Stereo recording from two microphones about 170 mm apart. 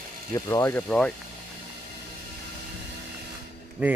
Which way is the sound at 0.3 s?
20° left (ahead or behind).